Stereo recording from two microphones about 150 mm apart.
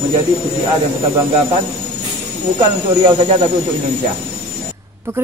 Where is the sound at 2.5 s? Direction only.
45° right (ahead or behind).